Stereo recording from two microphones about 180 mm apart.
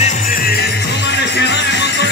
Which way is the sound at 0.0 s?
50° left (ahead or behind).